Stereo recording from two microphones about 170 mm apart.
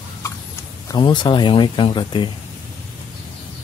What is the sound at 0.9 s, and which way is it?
Speech, 25° left (ahead or behind).